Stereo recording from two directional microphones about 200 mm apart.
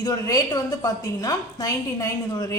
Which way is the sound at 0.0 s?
20° left (ahead or behind).